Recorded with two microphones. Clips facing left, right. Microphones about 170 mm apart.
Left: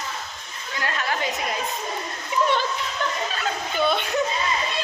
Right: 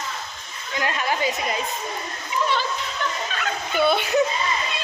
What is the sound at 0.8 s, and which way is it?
Speech, 15° right (ahead or behind).